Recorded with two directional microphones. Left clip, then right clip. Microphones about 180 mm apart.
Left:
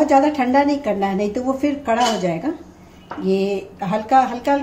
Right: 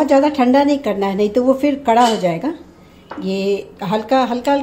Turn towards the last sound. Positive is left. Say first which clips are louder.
# even
turn(degrees=-30)  # may be behind; listen again after turning